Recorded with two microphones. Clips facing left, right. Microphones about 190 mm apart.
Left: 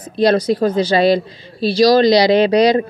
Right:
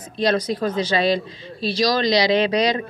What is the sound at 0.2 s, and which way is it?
A woman's voice, 35° left (ahead or behind).